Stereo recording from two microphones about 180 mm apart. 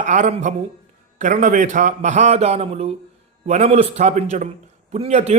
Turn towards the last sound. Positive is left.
turn(degrees=-40)  # may be behind; listen again after turning